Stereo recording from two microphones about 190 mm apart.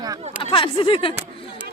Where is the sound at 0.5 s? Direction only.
25° left (ahead or behind).